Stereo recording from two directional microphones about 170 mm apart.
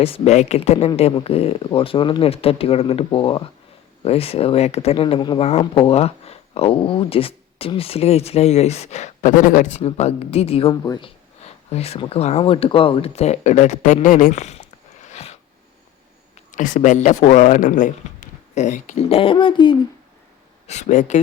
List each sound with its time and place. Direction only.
0.0 s speech: 35° left (ahead or behind)
9.8 s speech: 35° left (ahead or behind)
11.7 s speech: 40° left (ahead or behind)
20.7 s speech: 40° left (ahead or behind)